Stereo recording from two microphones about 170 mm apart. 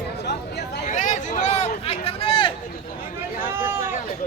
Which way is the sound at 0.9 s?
45° left (ahead or behind).